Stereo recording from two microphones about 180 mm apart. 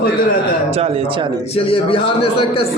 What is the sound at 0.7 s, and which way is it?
Speech, 35° right (ahead or behind).